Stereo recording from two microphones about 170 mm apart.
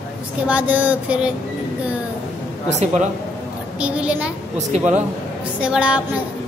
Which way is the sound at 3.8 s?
5° right (ahead or behind).